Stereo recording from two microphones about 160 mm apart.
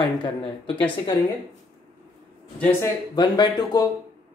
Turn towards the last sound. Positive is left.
turn(degrees=25)  # may be behind; listen again after turning